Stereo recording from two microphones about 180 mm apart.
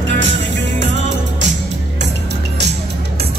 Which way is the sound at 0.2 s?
90° right.